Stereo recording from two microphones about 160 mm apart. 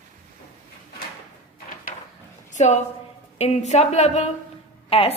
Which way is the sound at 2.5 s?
50° left (ahead or behind).